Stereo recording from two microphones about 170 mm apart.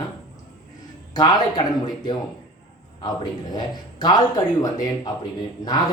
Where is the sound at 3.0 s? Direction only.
25° left (ahead or behind).